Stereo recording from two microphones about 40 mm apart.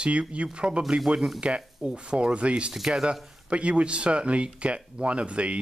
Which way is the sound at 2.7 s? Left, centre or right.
Centre.